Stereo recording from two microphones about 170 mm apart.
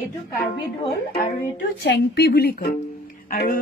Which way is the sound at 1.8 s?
70° left (ahead or behind).